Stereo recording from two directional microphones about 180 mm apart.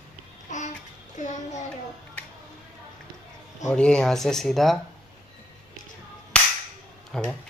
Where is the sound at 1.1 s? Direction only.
40° left (ahead or behind).